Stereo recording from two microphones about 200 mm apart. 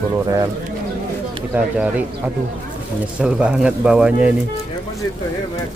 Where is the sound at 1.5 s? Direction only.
10° right (ahead or behind).